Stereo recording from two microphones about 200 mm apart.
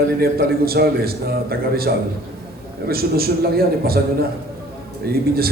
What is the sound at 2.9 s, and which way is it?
A man's voice, 50° right (ahead or behind).